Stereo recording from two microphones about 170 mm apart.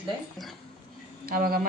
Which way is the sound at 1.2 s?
60° right (ahead or behind).